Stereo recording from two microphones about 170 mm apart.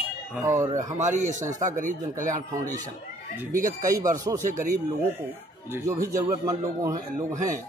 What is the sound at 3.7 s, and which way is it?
Speech, 20° right (ahead or behind).